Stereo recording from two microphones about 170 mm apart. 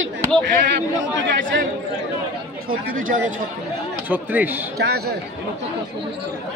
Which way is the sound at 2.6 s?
55° right (ahead or behind).